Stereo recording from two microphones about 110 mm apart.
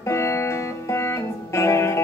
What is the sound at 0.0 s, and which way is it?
Music, 25° left (ahead or behind).